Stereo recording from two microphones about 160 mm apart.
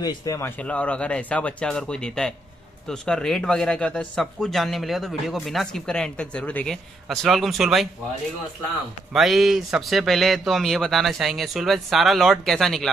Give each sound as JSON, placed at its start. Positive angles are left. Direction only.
{"t": 0.0, "sound": "a man's voice", "side_deg": 20}
{"t": 9.1, "sound": "a man's voice", "side_deg": 0}